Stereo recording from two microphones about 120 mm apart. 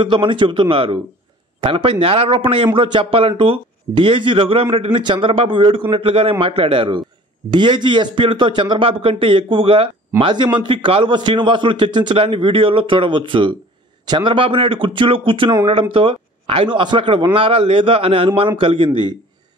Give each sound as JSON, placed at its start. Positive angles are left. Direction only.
{"t": 0.0, "sound": "speech", "side_deg": -45}